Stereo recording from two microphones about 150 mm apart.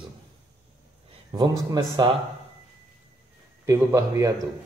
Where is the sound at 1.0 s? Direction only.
30° right (ahead or behind).